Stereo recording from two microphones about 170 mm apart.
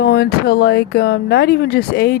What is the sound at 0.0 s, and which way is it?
Speech, 70° left (ahead or behind).